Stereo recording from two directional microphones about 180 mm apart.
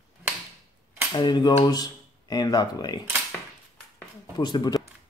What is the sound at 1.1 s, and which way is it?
A man's voice, 25° left (ahead or behind).